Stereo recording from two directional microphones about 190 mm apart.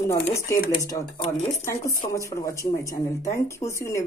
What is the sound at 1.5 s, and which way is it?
Speech, 15° left (ahead or behind).